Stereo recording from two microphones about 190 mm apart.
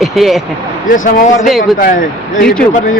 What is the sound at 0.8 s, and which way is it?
Speech, 45° left (ahead or behind).